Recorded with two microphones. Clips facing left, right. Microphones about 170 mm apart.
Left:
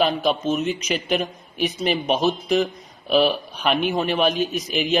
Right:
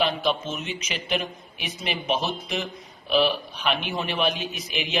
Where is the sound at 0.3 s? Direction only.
40° left (ahead or behind).